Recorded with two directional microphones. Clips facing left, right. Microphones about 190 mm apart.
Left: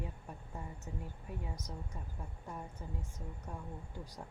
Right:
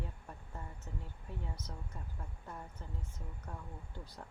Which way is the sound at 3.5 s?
15° left (ahead or behind).